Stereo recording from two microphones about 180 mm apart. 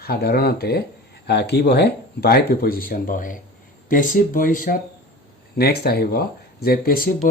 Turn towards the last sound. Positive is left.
turn(degrees=55)  # may be behind; listen again after turning